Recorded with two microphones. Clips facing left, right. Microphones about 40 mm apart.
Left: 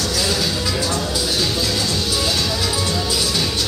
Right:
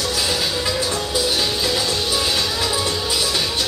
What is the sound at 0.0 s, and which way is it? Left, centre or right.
Music, centre.